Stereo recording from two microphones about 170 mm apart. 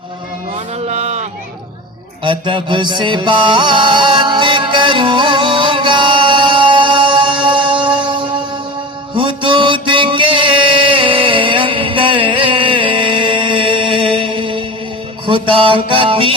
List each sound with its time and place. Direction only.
0.9 s a sound: 40° right (ahead or behind)
2.2 s music: 30° right (ahead or behind)
15.3 s mantra: 30° right (ahead or behind)